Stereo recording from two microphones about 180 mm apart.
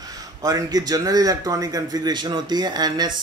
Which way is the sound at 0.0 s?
20° right (ahead or behind).